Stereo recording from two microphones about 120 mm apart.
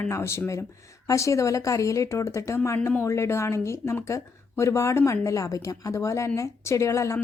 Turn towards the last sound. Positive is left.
turn(degrees=25)  # may be behind; listen again after turning